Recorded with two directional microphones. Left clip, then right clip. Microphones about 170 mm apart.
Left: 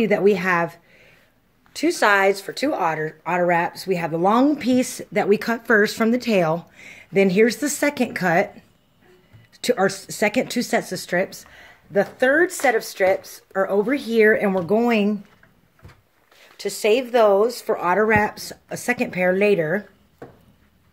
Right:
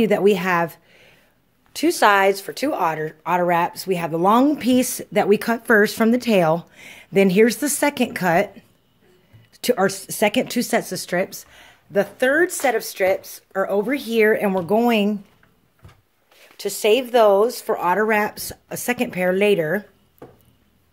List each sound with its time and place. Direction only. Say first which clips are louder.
0.0 s a woman's voice: right 1 dB; 20° right (ahead or behind)
16.5 s a woman's voice: right 1 dB; 15° right (ahead or behind)